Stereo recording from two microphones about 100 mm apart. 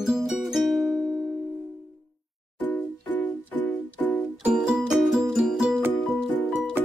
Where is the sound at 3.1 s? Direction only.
15° left (ahead or behind).